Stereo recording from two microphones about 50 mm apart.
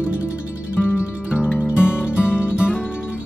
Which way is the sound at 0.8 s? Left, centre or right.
Left.